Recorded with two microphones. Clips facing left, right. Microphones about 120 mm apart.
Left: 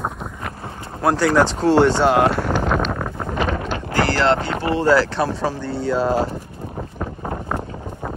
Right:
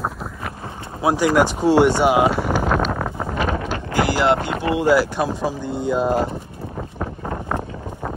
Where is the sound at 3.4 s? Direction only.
45° right (ahead or behind).